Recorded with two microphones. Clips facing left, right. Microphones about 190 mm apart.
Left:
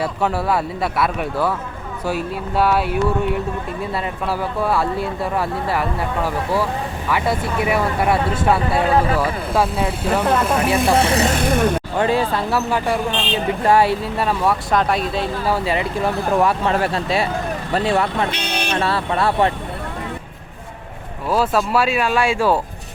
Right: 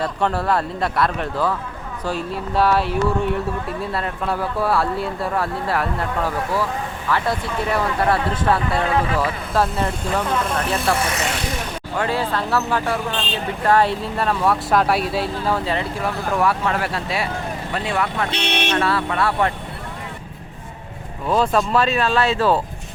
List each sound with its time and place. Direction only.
0.0 s speech: 5° left (ahead or behind)
9.7 s speech: 5° left (ahead or behind)
11.0 s speech: 30° left (ahead or behind)
11.3 s vehicle: 55° left (ahead or behind)
11.9 s speech: 20° left (ahead or behind); by 15.3 s 5° right (ahead or behind)
15.4 s speech: 10° left (ahead or behind)
16.4 s speech: 25° left (ahead or behind)
18.3 s speech: 25° right (ahead or behind)
18.7 s speech: 30° left (ahead or behind)
21.2 s speech: 5° left (ahead or behind)